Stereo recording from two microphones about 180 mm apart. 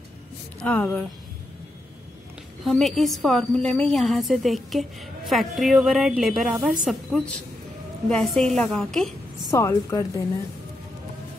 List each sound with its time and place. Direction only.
0.6 s speech: 5° left (ahead or behind)
2.6 s a woman's voice: centre (ahead or behind)
9.5 s speech: 15° left (ahead or behind)